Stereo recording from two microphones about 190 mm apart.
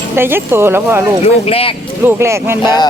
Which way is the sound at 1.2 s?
30° left (ahead or behind).